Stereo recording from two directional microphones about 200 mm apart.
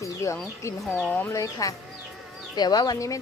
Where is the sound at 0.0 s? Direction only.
15° left (ahead or behind).